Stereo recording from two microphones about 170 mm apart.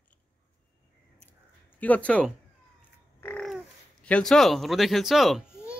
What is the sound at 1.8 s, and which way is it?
Speech, 10° left (ahead or behind).